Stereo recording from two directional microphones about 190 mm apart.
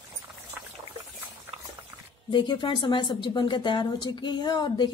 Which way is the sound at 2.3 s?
25° left (ahead or behind).